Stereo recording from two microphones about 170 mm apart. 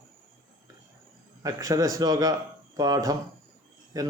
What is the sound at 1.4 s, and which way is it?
Speech, 20° right (ahead or behind).